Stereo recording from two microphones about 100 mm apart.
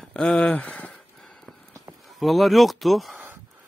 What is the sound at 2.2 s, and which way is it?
Speech, centre (ahead or behind).